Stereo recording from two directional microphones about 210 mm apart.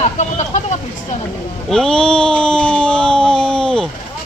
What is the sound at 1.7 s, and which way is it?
Speech, 5° left (ahead or behind).